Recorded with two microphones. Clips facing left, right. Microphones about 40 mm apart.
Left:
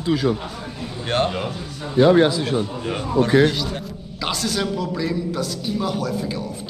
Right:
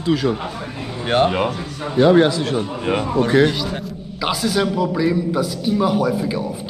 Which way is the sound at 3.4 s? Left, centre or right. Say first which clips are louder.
Right 1 dB; centre.